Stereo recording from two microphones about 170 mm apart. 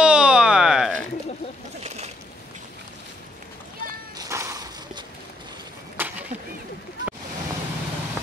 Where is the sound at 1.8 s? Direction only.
40° right (ahead or behind).